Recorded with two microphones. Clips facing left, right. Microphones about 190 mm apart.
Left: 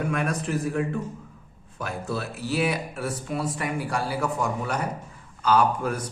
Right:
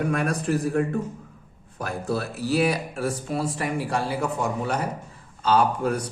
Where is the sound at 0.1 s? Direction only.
35° right (ahead or behind).